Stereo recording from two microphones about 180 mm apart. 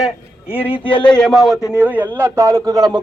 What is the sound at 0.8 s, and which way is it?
Speech, 25° left (ahead or behind).